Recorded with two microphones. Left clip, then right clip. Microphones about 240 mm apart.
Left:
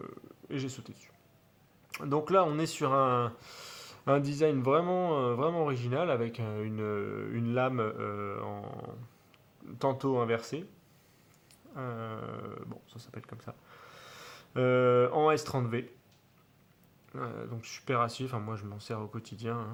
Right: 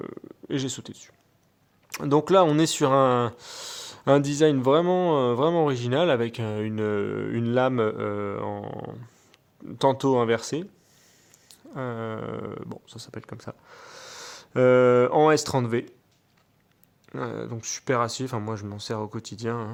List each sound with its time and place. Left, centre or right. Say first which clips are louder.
0.0 s a sound: right 8 dB; right
1.9 s speech: right 8 dB; right
17.1 s speech: right 7 dB; right